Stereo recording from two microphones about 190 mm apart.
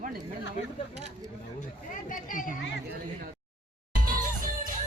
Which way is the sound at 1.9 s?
45° left (ahead or behind).